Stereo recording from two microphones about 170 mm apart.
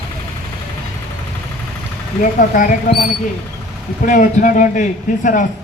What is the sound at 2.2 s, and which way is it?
A man's voice, 50° left (ahead or behind).